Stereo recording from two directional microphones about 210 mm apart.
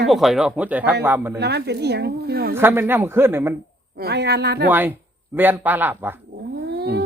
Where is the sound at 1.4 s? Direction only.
50° right (ahead or behind).